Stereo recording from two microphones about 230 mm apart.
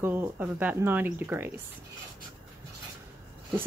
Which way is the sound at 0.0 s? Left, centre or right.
Centre.